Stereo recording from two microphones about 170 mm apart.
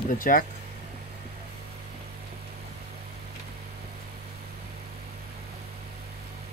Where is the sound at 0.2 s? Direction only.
55° left (ahead or behind).